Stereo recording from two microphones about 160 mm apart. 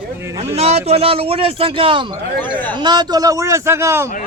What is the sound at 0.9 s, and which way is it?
A man's voice, 40° right (ahead or behind).